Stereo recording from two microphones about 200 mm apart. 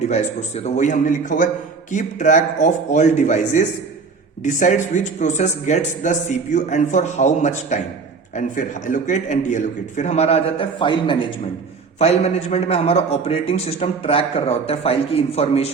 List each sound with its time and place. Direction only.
0.1 s a man's voice: 35° left (ahead or behind)